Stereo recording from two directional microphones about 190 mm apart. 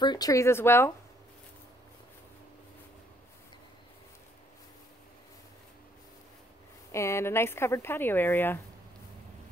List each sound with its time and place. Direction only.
0.0 s speech: 20° left (ahead or behind)
6.9 s speech: 15° left (ahead or behind)